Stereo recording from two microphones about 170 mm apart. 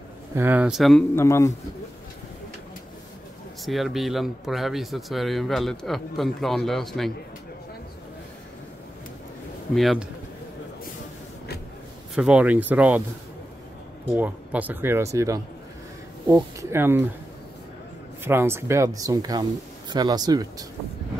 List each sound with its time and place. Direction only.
0.3 s speech: 10° right (ahead or behind)
1.1 s a man's voice: 15° left (ahead or behind)
3.6 s speech: centre (ahead or behind)
9.8 s speech: centre (ahead or behind)
12.2 s speech: 5° right (ahead or behind)
14.1 s speech: 10° right (ahead or behind)
18.2 s speech: 15° right (ahead or behind)